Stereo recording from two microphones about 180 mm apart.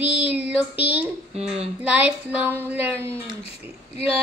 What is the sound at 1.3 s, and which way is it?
Speech, 35° right (ahead or behind).